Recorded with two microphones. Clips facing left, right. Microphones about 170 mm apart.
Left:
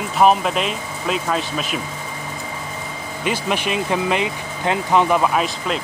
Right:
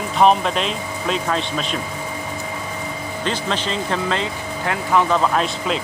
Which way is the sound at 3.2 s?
10° left (ahead or behind).